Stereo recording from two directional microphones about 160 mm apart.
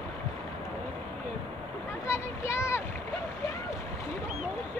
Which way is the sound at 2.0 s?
15° left (ahead or behind).